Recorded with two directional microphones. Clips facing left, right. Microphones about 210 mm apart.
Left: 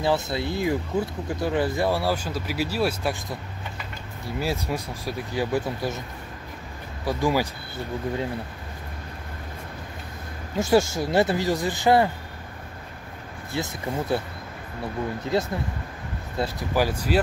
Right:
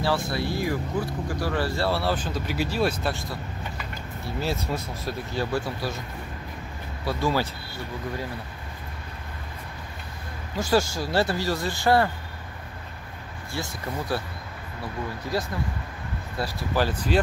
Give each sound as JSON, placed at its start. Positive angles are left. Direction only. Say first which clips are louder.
{"t": 0.0, "sound": "speech", "louder": "left 2 dB", "side_deg": 20}
{"t": 4.4, "sound": "speech", "louder": "left 1 dB", "side_deg": 10}
{"t": 7.1, "sound": "speech", "louder": "left 2 dB", "side_deg": 15}
{"t": 10.6, "sound": "speech", "louder": "left 3 dB", "side_deg": 25}
{"t": 13.5, "sound": "speech", "louder": "left 3 dB", "side_deg": 20}
{"t": 15.3, "sound": "speech", "louder": "left 3 dB", "side_deg": 20}